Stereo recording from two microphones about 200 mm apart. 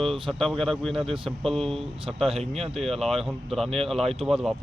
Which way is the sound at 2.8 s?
Centre (ahead or behind).